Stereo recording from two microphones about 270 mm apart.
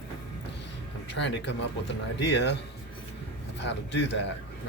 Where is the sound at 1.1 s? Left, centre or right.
Left.